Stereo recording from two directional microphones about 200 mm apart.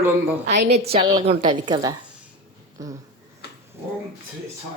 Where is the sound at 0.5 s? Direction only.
35° right (ahead or behind); by 3.0 s 15° right (ahead or behind).